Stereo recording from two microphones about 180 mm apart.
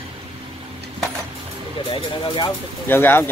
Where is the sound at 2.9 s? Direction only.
10° left (ahead or behind).